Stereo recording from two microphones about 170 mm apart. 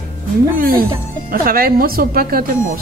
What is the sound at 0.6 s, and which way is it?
Speech, 60° right (ahead or behind).